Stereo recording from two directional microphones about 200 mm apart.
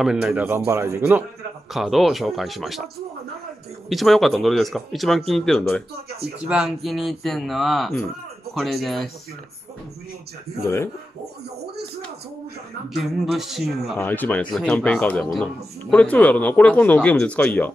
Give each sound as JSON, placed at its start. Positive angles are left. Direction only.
{"t": 0.0, "sound": "speech", "side_deg": -5}
{"t": 1.7, "sound": "speech", "side_deg": 0}
{"t": 3.9, "sound": "speech", "side_deg": 0}
{"t": 10.6, "sound": "speech", "side_deg": 15}
{"t": 11.6, "sound": "a sound", "side_deg": -55}
{"t": 12.9, "sound": "speech", "side_deg": 0}
{"t": 13.9, "sound": "speech", "side_deg": 10}